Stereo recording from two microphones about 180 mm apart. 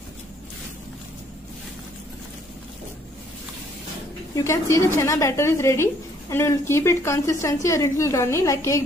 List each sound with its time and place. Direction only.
4.5 s a woman's voice: 15° left (ahead or behind)